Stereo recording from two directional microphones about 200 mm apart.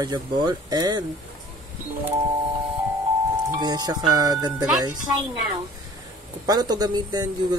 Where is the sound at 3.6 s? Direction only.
20° right (ahead or behind).